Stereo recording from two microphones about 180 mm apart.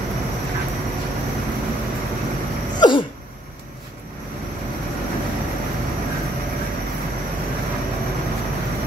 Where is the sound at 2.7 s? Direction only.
25° left (ahead or behind).